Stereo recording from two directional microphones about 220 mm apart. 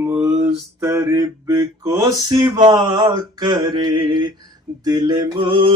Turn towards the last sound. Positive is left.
turn(degrees=-20)  # may be behind; listen again after turning